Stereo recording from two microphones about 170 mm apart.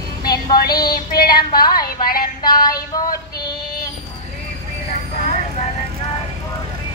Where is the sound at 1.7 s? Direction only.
60° left (ahead or behind).